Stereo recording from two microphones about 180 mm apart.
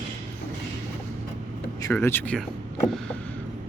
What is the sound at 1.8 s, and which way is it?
Speech, 15° left (ahead or behind).